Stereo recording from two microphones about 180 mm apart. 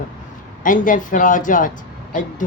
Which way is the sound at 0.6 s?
45° left (ahead or behind).